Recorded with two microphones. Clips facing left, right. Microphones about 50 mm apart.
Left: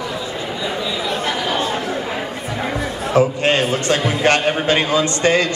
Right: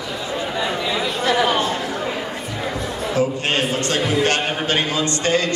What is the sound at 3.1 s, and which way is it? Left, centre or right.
A man's voice, left.